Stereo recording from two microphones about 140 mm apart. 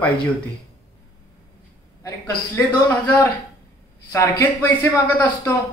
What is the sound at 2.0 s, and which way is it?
Speech, 20° left (ahead or behind).